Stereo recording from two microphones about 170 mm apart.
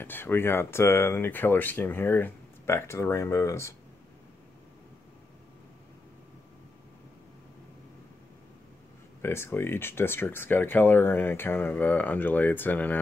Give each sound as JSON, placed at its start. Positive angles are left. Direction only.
{"t": 0.0, "sound": "speech", "side_deg": 10}
{"t": 9.2, "sound": "speech", "side_deg": 15}